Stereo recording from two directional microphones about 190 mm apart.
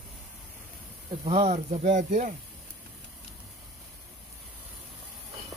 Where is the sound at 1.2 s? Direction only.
35° right (ahead or behind).